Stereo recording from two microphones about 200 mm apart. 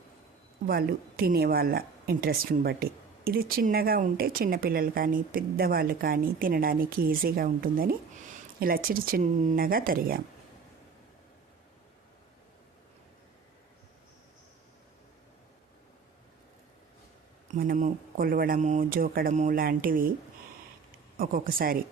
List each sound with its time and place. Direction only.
0.7 s speech: 50° right (ahead or behind)
17.5 s speech: 45° right (ahead or behind)
21.2 s speech: 45° right (ahead or behind)